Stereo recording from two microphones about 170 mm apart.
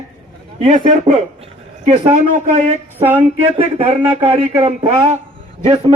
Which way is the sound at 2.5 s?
40° right (ahead or behind).